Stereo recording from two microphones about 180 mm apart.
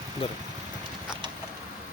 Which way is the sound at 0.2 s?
30° left (ahead or behind).